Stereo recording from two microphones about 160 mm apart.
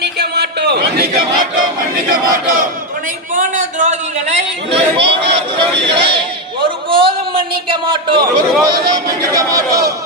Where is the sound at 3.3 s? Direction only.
50° right (ahead or behind); by 8.2 s 30° right (ahead or behind).